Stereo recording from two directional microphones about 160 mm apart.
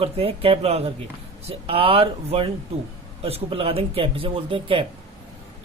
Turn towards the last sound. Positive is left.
turn(degrees=-35)  # may be behind; listen again after turning